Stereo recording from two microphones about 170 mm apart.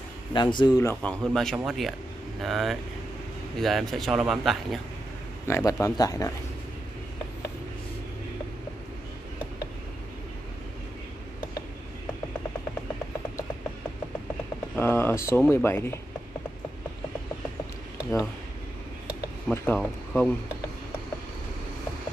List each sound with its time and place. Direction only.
0.3 s speech: 25° left (ahead or behind)
1.0 s speech: 5° left (ahead or behind)
5.5 s speech: 20° left (ahead or behind)
14.8 s speech: 15° left (ahead or behind)
19.5 s speech: 10° left (ahead or behind)